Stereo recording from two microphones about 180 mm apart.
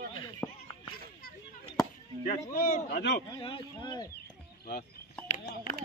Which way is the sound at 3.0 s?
70° left (ahead or behind).